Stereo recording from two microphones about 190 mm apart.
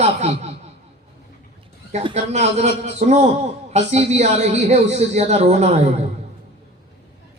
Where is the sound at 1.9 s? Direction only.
35° right (ahead or behind).